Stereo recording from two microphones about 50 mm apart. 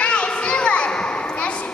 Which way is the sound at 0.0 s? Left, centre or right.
Left.